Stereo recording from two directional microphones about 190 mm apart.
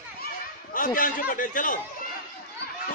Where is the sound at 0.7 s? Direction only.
45° left (ahead or behind).